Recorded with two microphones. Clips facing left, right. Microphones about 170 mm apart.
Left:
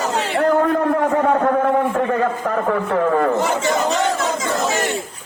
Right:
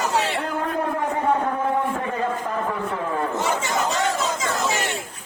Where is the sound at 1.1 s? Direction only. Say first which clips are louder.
Left 6 dB; 65° left (ahead or behind).